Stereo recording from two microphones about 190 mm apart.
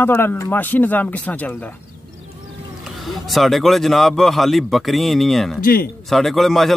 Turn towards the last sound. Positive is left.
turn(degrees=0)  # may be behind; listen again after turning